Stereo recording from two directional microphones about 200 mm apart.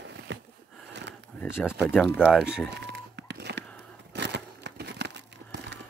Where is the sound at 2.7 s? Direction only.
60° right (ahead or behind).